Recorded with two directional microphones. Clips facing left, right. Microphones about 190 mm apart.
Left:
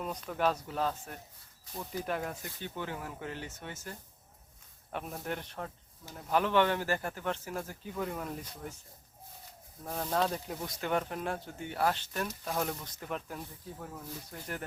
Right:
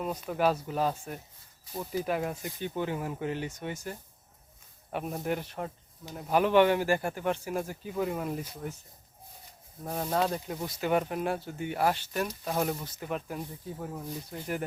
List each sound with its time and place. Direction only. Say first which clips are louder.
0.0 s speech: right 4 dB; 10° right (ahead or behind)
9.8 s speech: right 2 dB; 10° right (ahead or behind)